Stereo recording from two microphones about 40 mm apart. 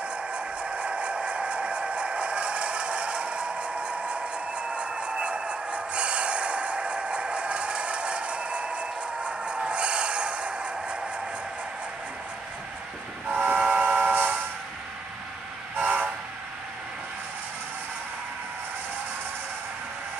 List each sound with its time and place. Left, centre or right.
0.3 s a sound: right
13.3 s train: right
14.1 s vehicle: right
15.8 s train: right